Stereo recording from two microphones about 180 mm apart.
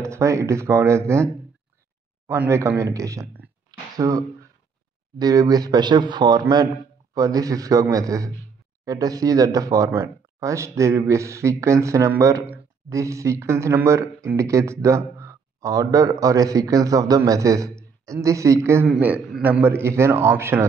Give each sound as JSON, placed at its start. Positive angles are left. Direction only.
{"t": 0.0, "sound": "speech", "side_deg": -15}
{"t": 5.2, "sound": "a man's voice", "side_deg": -20}